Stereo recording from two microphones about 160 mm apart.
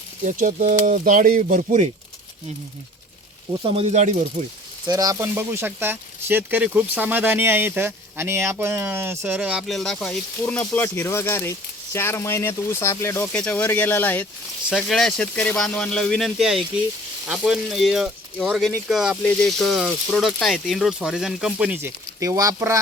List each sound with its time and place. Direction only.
0.3 s speech: 55° right (ahead or behind)
3.6 s speech: 35° right (ahead or behind)
4.9 s speech: 25° right (ahead or behind); by 14.3 s 10° left (ahead or behind)
14.7 s speech: centre (ahead or behind); by 22.8 s 20° right (ahead or behind)